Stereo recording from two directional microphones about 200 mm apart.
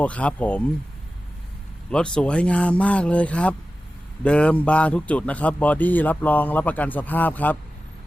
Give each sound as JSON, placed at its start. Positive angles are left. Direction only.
{"t": 0.0, "sound": "a man's voice", "side_deg": 5}
{"t": 1.9, "sound": "a man's voice", "side_deg": 5}